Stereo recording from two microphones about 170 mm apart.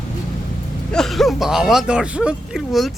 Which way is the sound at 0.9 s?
Centre (ahead or behind).